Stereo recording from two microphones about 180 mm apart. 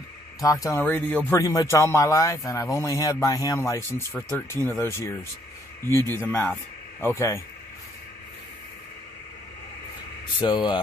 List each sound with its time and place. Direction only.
0.4 s speech: 20° left (ahead or behind)
10.4 s speech: 25° left (ahead or behind)